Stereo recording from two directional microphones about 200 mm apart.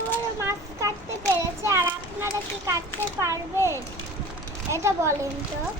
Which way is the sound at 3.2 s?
15° right (ahead or behind).